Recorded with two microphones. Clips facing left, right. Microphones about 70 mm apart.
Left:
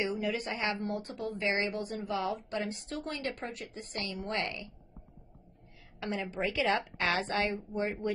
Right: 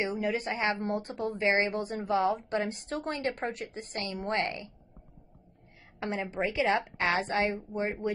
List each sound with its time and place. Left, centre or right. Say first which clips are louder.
0.0 s a woman's voice: right 2 dB; right
5.9 s a woman's voice: right 3 dB; right